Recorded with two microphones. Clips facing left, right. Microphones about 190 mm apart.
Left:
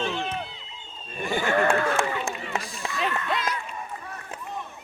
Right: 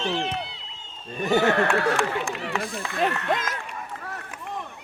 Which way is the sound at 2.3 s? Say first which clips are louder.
Right 3 dB; 70° right (ahead or behind).